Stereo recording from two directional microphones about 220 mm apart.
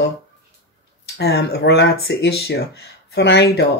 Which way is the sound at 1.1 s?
45° left (ahead or behind).